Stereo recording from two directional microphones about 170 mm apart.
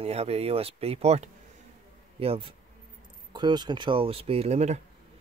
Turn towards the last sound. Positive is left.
turn(degrees=-40)  # may be behind; listen again after turning